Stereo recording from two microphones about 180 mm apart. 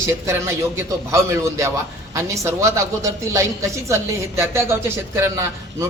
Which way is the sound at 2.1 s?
15° right (ahead or behind).